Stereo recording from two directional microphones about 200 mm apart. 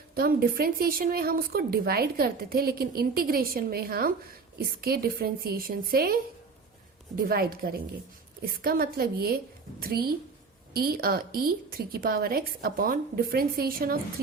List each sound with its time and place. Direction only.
0.1 s speech: 50° right (ahead or behind)
7.2 s speech: 50° right (ahead or behind)